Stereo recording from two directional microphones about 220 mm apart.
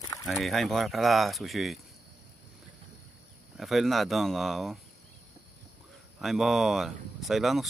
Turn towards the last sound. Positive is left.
turn(degrees=0)  # may be behind; listen again after turning